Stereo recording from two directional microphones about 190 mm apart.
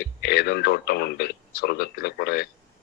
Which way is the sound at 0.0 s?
55° left (ahead or behind).